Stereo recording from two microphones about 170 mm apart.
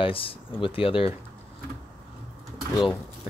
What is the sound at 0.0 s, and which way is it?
Speech, 30° left (ahead or behind).